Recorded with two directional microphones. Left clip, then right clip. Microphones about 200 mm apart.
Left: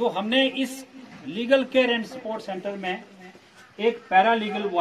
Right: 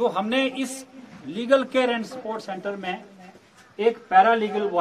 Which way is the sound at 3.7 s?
30° left (ahead or behind).